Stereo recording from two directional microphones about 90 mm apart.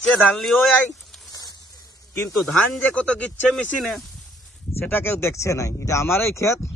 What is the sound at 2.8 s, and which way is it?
Speech, 15° left (ahead or behind).